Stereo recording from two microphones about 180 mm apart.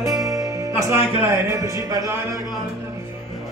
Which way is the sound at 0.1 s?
20° right (ahead or behind).